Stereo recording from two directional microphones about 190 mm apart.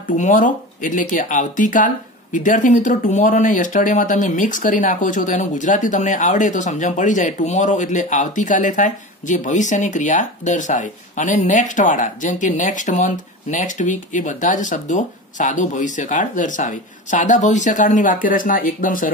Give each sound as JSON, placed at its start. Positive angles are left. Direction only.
{"t": 0.1, "sound": "speech", "side_deg": 40}